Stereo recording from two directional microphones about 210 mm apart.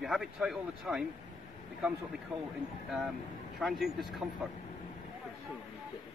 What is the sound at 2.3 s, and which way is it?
Speech, 5° right (ahead or behind).